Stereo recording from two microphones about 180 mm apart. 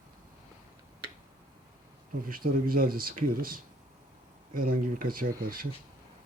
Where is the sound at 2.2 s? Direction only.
55° right (ahead or behind).